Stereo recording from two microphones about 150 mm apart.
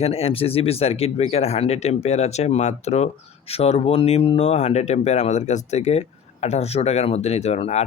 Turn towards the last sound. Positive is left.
turn(degrees=45)  # may be behind; listen again after turning